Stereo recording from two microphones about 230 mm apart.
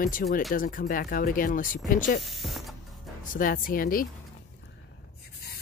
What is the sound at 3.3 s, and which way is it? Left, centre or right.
Speech, left.